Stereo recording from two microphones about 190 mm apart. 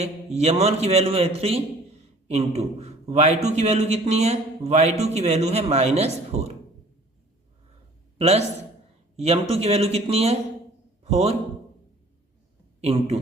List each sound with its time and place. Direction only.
0.0 s a man's voice: 35° right (ahead or behind)
8.2 s a man's voice: 35° right (ahead or behind)
12.8 s a man's voice: 30° right (ahead or behind)